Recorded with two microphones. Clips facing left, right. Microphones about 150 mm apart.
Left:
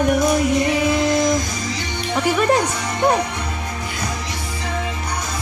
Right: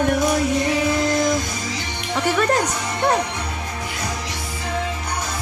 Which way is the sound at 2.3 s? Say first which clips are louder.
Left 2 dB; 10° left (ahead or behind).